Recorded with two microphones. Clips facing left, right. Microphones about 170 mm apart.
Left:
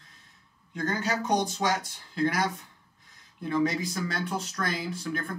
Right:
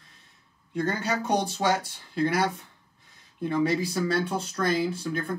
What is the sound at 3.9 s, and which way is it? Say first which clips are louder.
Speech: right 5 dB; 30° right (ahead or behind).